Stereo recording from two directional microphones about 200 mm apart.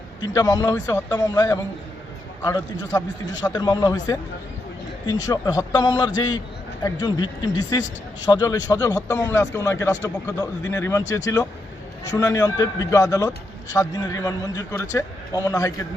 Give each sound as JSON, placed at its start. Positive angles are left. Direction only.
{"t": 0.2, "sound": "a man's voice", "side_deg": 20}